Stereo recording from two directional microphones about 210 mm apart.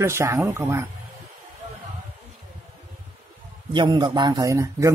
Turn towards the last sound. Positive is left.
turn(degrees=-15)  # may be behind; listen again after turning